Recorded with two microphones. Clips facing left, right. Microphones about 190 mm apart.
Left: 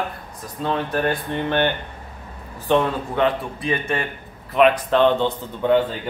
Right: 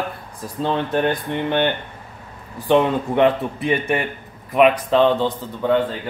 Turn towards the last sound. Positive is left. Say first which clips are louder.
# left 1 dB
turn(degrees=0)  # may be behind; listen again after turning